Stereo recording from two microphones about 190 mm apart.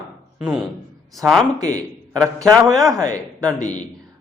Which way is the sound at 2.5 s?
Centre (ahead or behind).